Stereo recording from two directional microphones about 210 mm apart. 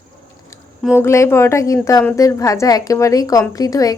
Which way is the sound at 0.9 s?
15° left (ahead or behind).